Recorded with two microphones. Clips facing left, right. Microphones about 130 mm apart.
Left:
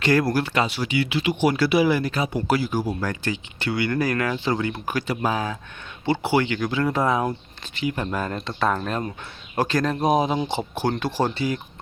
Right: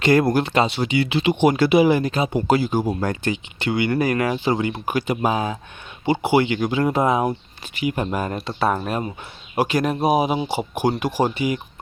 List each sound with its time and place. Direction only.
0.0 s speech: 20° right (ahead or behind)